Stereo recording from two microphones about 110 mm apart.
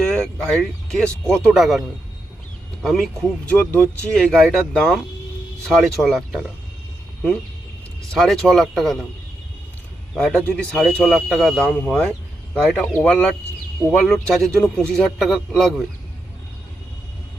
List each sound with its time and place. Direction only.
0.1 s speech: 5° left (ahead or behind)
2.8 s speech: centre (ahead or behind)
3.4 s speech: 10° left (ahead or behind)
8.1 s speech: 5° left (ahead or behind)
10.5 s speech: 5° left (ahead or behind)